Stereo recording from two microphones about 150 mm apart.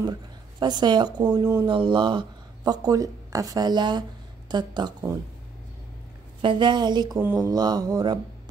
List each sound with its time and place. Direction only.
0.0 s speech: 30° right (ahead or behind)
6.4 s speech: 30° right (ahead or behind)